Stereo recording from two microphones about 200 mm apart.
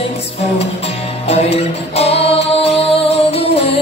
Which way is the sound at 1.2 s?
30° left (ahead or behind).